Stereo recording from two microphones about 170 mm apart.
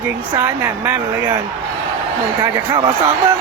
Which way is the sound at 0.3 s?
15° right (ahead or behind).